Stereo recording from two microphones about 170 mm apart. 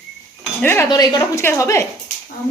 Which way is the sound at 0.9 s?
25° left (ahead or behind).